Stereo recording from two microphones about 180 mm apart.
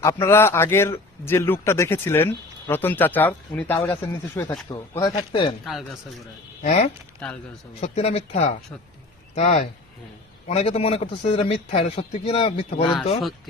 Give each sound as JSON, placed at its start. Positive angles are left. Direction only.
{"t": 0.0, "sound": "speech", "side_deg": 15}
{"t": 5.6, "sound": "a man's voice", "side_deg": 0}
{"t": 6.6, "sound": "a man's voice", "side_deg": 45}